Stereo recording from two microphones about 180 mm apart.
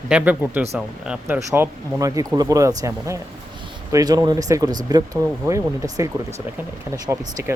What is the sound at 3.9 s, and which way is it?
Speech, 20° right (ahead or behind).